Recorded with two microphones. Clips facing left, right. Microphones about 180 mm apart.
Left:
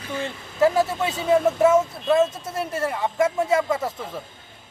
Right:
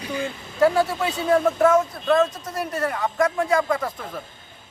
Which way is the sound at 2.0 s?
25° left (ahead or behind).